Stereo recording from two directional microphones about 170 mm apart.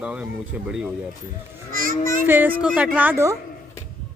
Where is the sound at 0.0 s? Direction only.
5° right (ahead or behind).